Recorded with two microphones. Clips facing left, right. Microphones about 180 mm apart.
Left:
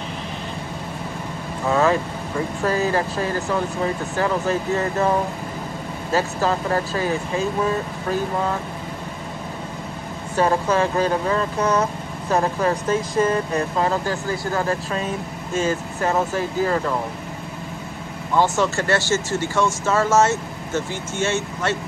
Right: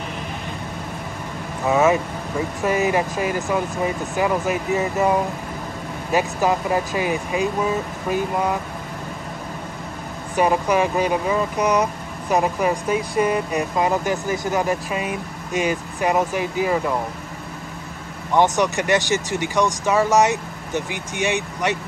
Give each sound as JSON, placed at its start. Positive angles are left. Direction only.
{"t": 1.7, "sound": "speech", "side_deg": -20}
{"t": 10.3, "sound": "speech", "side_deg": -15}
{"t": 18.3, "sound": "speech", "side_deg": -20}